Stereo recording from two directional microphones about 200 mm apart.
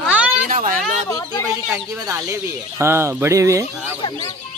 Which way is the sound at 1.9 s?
15° right (ahead or behind).